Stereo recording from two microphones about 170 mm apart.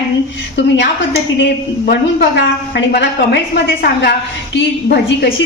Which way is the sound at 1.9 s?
80° left.